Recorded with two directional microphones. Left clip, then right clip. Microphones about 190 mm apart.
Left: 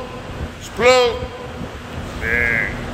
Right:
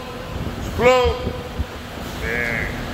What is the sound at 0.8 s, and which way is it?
Speech, 20° left (ahead or behind).